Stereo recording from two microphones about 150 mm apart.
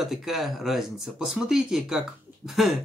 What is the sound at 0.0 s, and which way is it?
Speech, centre (ahead or behind).